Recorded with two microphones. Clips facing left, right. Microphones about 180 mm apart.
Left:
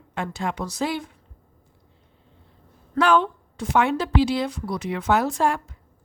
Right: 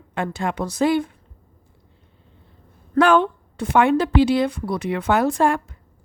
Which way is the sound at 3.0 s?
55° right (ahead or behind).